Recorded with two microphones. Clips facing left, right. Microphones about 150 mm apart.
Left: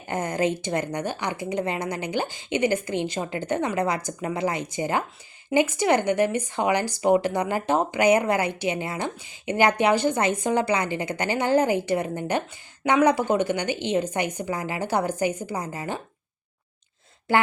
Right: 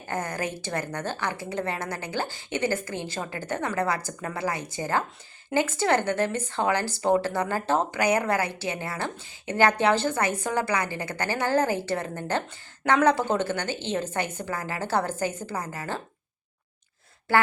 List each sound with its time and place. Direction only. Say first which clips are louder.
0.1 s a woman's voice: left 6 dB; 20° left (ahead or behind)
17.3 s speech: left 1 dB; 20° left (ahead or behind)